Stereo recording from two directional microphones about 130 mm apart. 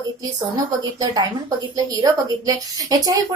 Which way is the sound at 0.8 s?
30° right (ahead or behind).